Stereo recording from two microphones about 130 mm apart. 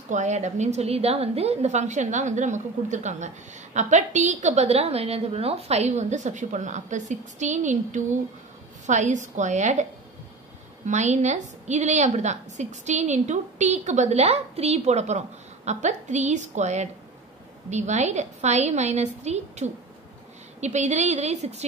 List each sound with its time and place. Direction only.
0.1 s a woman's voice: 65° right (ahead or behind)
10.9 s a woman's voice: 65° right (ahead or behind)